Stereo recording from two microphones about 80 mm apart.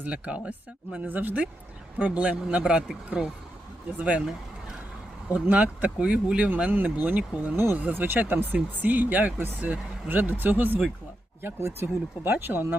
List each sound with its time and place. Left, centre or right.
0.0 s speech: centre
5.3 s speech: centre